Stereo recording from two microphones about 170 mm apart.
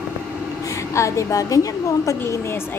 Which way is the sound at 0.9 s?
15° left (ahead or behind).